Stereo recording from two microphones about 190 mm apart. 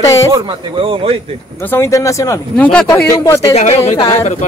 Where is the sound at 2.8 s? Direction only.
20° left (ahead or behind).